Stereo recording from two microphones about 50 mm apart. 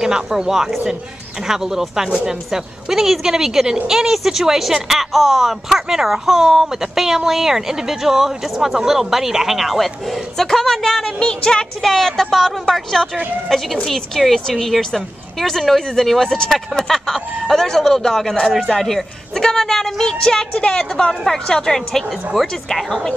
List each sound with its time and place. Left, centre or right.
0.0 s speech: centre
11.8 s speech: centre